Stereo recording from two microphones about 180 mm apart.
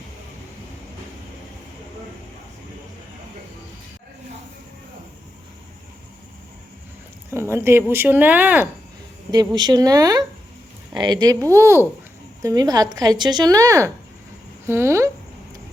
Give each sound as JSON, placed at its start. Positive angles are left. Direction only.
{"t": 7.3, "sound": "speech", "side_deg": -15}
{"t": 9.3, "sound": "speech", "side_deg": -25}